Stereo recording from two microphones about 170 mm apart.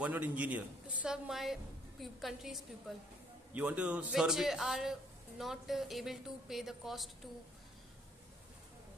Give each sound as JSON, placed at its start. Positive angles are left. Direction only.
{"t": 0.0, "sound": "a woman's voice", "side_deg": -10}